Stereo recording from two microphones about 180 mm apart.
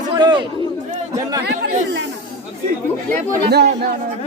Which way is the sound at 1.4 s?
70° right (ahead or behind).